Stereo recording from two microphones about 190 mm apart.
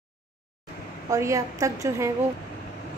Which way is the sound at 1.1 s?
15° right (ahead or behind).